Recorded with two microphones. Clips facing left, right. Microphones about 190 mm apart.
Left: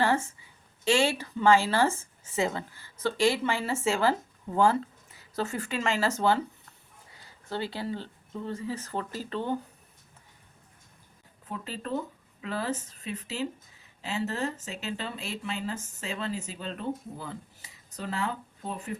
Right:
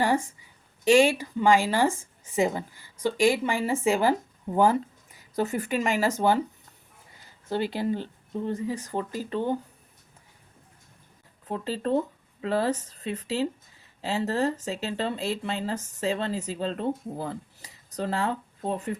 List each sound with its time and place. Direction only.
0.0 s a woman's voice: 15° right (ahead or behind)
7.5 s speech: 15° right (ahead or behind)
11.4 s speech: 35° right (ahead or behind)